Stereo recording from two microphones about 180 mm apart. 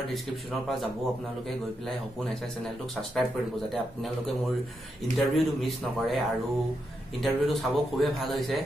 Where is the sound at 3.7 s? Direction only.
Centre (ahead or behind).